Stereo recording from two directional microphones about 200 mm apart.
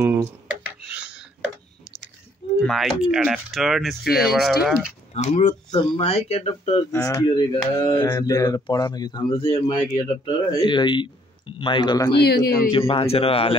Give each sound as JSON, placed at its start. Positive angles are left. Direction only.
{"t": 0.0, "sound": "a sound", "side_deg": -10}
{"t": 2.6, "sound": "speech", "side_deg": 0}
{"t": 5.1, "sound": "speech", "side_deg": 30}
{"t": 6.9, "sound": "speech", "side_deg": 15}
{"t": 12.2, "sound": "speech", "side_deg": 50}
{"t": 12.7, "sound": "speech", "side_deg": 25}